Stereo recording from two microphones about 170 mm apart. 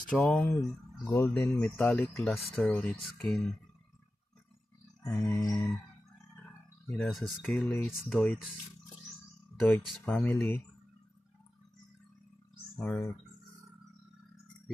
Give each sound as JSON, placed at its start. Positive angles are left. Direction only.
{"t": 0.1, "sound": "speech", "side_deg": 5}
{"t": 5.0, "sound": "speech", "side_deg": 15}
{"t": 6.9, "sound": "speech", "side_deg": 0}
{"t": 9.7, "sound": "speech", "side_deg": 10}
{"t": 12.8, "sound": "speech", "side_deg": 10}